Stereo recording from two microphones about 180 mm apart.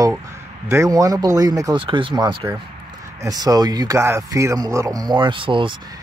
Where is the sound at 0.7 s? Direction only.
15° right (ahead or behind).